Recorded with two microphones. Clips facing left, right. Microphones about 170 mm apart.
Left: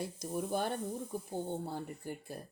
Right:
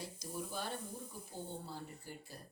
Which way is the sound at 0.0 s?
55° left (ahead or behind).